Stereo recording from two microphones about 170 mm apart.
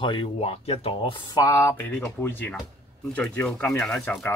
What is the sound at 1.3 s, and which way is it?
Speech, 20° left (ahead or behind).